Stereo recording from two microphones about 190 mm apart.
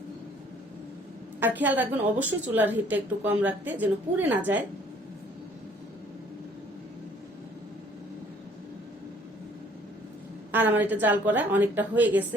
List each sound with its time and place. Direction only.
1.4 s a woman's voice: 10° right (ahead or behind)
10.5 s a woman's voice: 10° right (ahead or behind)